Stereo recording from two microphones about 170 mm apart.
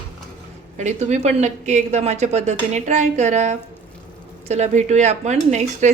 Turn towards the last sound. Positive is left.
turn(degrees=-40)  # may be behind; listen again after turning